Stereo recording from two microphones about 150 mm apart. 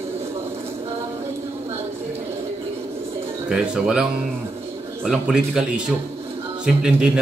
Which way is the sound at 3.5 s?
5° right (ahead or behind).